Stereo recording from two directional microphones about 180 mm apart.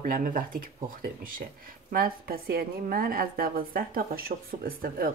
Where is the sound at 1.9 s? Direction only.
55° right (ahead or behind).